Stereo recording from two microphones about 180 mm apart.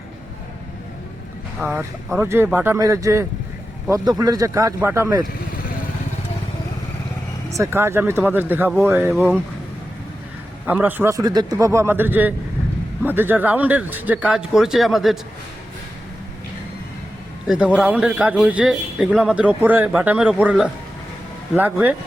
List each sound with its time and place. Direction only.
1.6 s speech: 15° right (ahead or behind)
7.5 s speech: 15° right (ahead or behind)
10.7 s speech: 10° right (ahead or behind)
17.4 s a man's voice: 5° right (ahead or behind)